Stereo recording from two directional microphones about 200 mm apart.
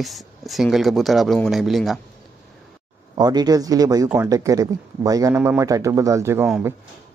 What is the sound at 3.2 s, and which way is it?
A man's voice, 20° right (ahead or behind).